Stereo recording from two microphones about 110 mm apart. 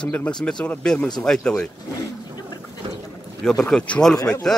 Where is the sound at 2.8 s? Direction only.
50° right (ahead or behind).